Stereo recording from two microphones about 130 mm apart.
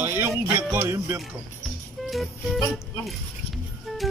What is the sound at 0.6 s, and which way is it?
Music, 20° right (ahead or behind).